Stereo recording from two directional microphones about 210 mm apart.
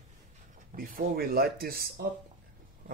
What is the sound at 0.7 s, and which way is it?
Speech, 40° right (ahead or behind).